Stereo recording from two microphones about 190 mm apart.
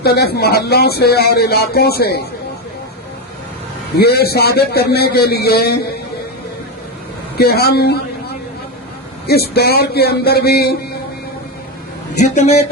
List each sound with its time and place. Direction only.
0.0 s speech: 55° left (ahead or behind)
3.9 s speech: 55° left (ahead or behind)
7.3 s speech: 55° left (ahead or behind)
9.2 s speech: 55° left (ahead or behind)
12.1 s speech: 40° left (ahead or behind)